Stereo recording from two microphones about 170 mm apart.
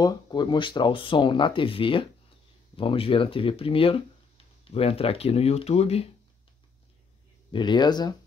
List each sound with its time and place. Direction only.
0.0 s speech: 25° left (ahead or behind)
7.5 s speech: 25° left (ahead or behind)